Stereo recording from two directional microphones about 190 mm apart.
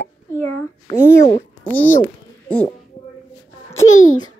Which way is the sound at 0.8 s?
30° left (ahead or behind).